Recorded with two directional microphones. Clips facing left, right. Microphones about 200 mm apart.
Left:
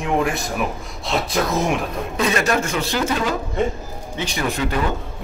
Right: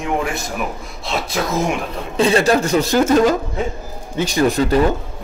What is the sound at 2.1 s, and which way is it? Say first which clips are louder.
A man's voice: right 6 dB; 30° right (ahead or behind).